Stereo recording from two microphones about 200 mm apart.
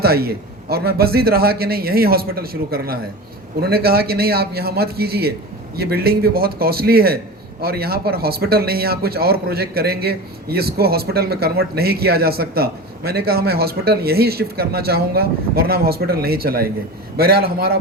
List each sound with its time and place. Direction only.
0.0 s speech: 50° right (ahead or behind)